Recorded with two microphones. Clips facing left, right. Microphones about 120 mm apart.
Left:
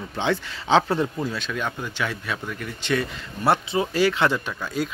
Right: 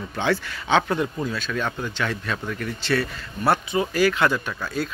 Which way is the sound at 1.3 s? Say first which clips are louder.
Right 1 dB; 15° left (ahead or behind).